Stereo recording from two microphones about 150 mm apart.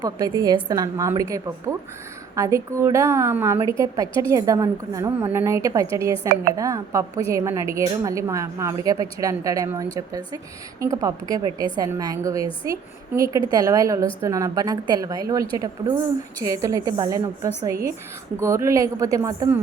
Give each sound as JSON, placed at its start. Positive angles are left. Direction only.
{"t": 0.0, "sound": "a woman's voice", "side_deg": -25}